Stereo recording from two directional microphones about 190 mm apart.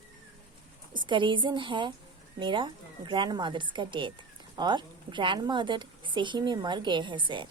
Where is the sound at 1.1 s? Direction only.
25° right (ahead or behind).